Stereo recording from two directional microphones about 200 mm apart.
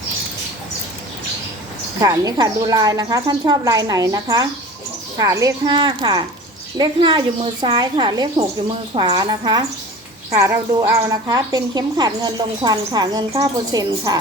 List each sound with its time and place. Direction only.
2.0 s a woman's voice: 20° right (ahead or behind)